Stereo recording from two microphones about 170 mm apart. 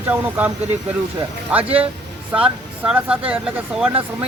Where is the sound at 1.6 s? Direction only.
35° right (ahead or behind).